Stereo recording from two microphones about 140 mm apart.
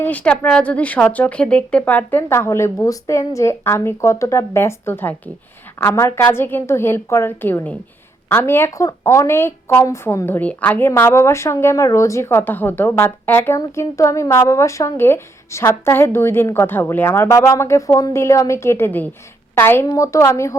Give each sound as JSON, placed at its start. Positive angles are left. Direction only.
{"t": 0.0, "sound": "a woman's voice", "side_deg": 10}